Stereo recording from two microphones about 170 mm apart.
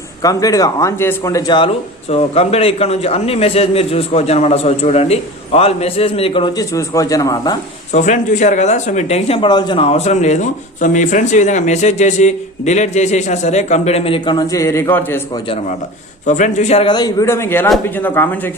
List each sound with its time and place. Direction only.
0.2 s a man's voice: 20° left (ahead or behind)
7.9 s speech: 45° left (ahead or behind); by 15.2 s 10° left (ahead or behind)
16.2 s speech: 45° left (ahead or behind)
16.8 s a man's voice: 25° left (ahead or behind)